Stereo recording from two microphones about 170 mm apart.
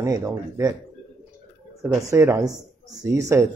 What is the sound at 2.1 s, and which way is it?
Speech, 15° right (ahead or behind).